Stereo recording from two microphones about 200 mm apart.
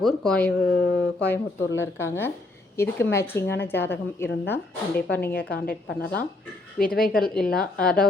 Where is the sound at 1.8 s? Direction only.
10° left (ahead or behind).